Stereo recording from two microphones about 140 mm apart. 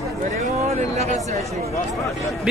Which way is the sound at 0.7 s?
55° right (ahead or behind).